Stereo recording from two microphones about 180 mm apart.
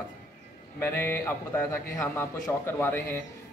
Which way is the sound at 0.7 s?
10° left (ahead or behind).